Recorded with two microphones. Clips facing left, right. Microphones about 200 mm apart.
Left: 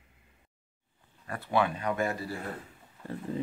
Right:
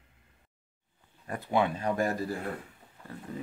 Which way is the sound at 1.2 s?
15° right (ahead or behind).